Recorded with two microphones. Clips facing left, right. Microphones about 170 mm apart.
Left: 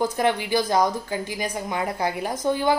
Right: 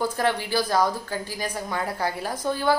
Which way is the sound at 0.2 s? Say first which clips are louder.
Left 2 dB; 15° left (ahead or behind).